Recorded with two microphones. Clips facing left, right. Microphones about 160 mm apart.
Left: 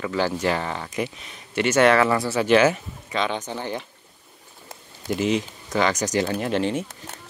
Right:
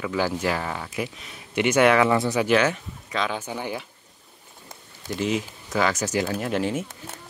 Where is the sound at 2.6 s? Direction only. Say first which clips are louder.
Left 4 dB; centre (ahead or behind).